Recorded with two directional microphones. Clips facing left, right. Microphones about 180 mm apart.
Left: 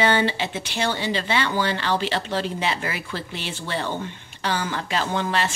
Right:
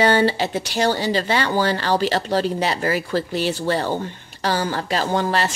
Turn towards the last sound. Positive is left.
turn(degrees=-40)  # may be behind; listen again after turning